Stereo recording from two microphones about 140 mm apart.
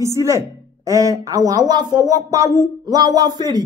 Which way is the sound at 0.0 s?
20° right (ahead or behind).